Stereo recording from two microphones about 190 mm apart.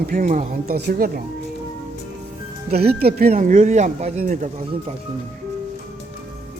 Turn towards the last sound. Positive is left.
turn(degrees=-40)  # may be behind; listen again after turning